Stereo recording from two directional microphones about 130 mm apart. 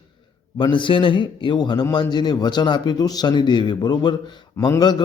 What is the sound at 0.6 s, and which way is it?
A man's voice, 40° left (ahead or behind).